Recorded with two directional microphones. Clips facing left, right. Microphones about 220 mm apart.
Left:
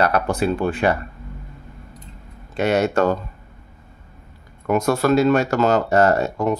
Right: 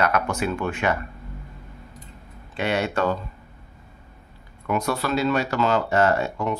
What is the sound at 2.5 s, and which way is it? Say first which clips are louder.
Speech: left 6 dB; 45° left (ahead or behind).